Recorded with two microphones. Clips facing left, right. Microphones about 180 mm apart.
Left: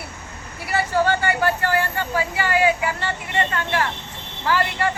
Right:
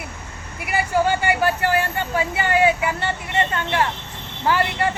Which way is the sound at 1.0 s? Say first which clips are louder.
Right 1 dB; 15° right (ahead or behind).